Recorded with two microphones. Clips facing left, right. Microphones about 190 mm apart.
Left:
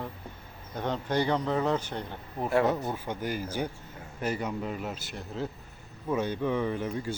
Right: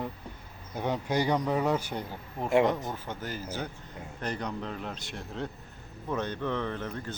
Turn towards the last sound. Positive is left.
turn(degrees=10)  # may be behind; listen again after turning